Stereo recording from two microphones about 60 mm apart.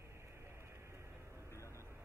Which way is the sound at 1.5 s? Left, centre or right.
Left.